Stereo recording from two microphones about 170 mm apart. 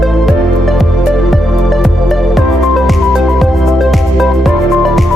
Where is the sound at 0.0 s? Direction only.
Centre (ahead or behind).